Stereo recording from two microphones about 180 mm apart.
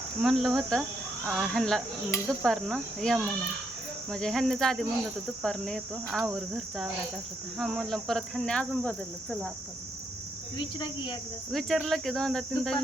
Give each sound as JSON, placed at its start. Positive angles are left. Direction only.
{"t": 0.2, "sound": "speech", "side_deg": 0}
{"t": 10.6, "sound": "speech", "side_deg": 25}
{"t": 11.5, "sound": "speech", "side_deg": 0}